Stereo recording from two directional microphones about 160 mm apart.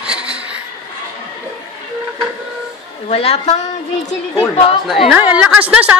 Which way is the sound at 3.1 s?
40° left (ahead or behind).